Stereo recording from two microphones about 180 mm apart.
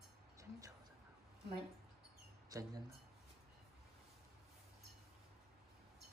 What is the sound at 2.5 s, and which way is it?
Speech, 20° right (ahead or behind).